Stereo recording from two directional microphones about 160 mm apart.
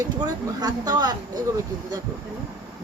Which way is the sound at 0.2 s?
25° right (ahead or behind).